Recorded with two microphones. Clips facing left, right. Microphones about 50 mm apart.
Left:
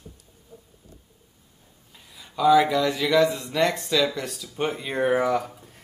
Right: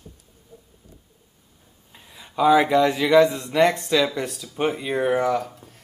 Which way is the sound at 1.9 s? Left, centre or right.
Right.